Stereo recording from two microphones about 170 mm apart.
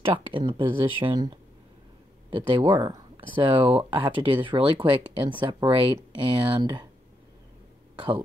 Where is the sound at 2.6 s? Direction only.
30° right (ahead or behind).